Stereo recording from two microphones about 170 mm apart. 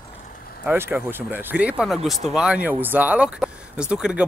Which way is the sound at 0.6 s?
10° right (ahead or behind).